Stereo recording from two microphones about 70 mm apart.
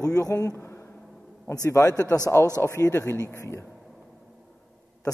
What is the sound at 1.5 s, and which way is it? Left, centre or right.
Speech, left.